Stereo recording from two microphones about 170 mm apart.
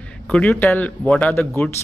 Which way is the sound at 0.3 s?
10° left (ahead or behind).